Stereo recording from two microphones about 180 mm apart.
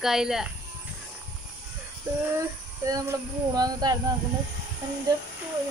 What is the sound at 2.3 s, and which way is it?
Speech, 20° right (ahead or behind).